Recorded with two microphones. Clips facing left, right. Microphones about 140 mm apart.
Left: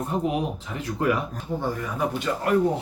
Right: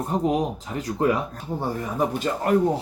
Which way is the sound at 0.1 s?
40° right (ahead or behind).